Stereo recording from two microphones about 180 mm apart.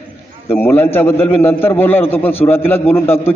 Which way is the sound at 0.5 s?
10° left (ahead or behind).